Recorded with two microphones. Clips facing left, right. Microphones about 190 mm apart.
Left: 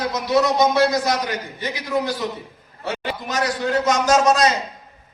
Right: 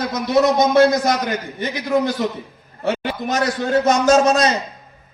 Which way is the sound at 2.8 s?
45° right (ahead or behind).